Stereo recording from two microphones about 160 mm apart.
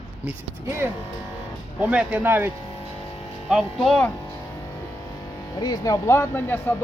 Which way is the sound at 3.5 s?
Centre (ahead or behind).